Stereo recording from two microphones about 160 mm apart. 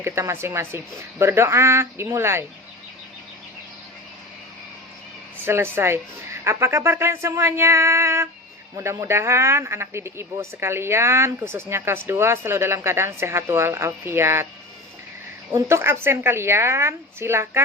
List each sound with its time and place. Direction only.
0.0 s speech: 15° right (ahead or behind)
5.5 s speech: 15° right (ahead or behind)
15.7 s speech: 15° right (ahead or behind)